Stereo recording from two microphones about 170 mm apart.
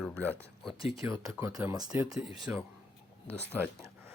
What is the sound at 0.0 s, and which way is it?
Speech, 10° left (ahead or behind).